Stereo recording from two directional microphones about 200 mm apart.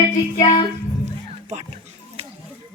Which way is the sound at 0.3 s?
30° left (ahead or behind).